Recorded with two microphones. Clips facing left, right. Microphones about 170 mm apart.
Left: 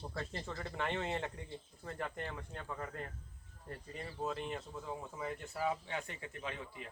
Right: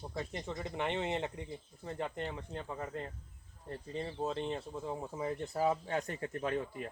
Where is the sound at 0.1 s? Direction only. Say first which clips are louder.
Right 3 dB; 20° right (ahead or behind).